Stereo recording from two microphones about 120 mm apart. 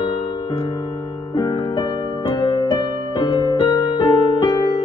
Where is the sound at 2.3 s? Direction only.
40° left (ahead or behind).